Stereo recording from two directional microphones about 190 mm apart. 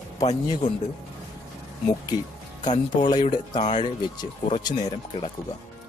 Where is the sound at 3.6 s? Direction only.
35° left (ahead or behind).